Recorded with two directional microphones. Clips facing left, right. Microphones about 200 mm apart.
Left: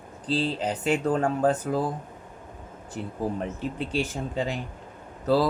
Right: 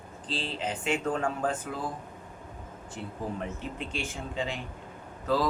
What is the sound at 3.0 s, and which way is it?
Speech, 45° left (ahead or behind).